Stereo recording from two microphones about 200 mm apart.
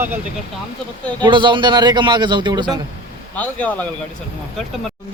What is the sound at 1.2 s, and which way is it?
Speech, 25° right (ahead or behind).